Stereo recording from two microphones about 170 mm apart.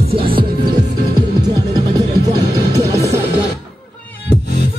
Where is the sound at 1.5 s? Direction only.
20° right (ahead or behind).